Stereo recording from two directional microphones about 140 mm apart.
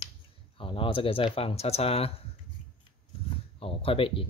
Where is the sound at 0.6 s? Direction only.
40° left (ahead or behind).